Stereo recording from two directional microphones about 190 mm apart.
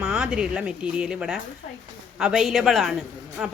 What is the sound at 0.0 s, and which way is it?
Speech, 5° right (ahead or behind).